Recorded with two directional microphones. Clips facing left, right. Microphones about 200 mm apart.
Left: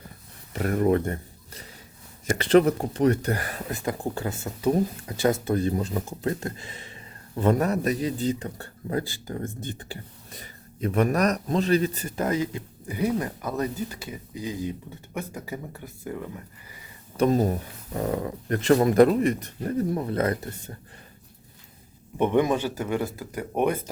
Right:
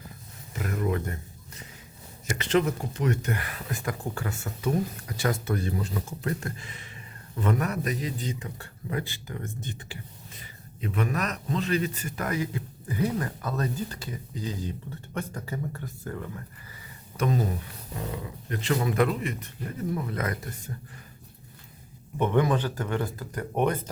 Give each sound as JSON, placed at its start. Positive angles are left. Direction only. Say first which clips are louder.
{"t": 0.5, "sound": "speech", "louder": "left 7 dB", "side_deg": 50}
{"t": 2.2, "sound": "speech", "louder": "left 6 dB", "side_deg": 35}
{"t": 3.7, "sound": "speech", "louder": "left 3 dB", "side_deg": 25}
{"t": 5.7, "sound": "speech", "louder": "left 4 dB", "side_deg": 35}
{"t": 17.2, "sound": "speech", "louder": "left 6 dB", "side_deg": 40}
{"t": 22.2, "sound": "speech", "louder": "left 2 dB", "side_deg": 20}